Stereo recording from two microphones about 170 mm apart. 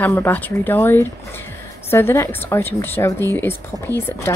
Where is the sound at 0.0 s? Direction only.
10° left (ahead or behind).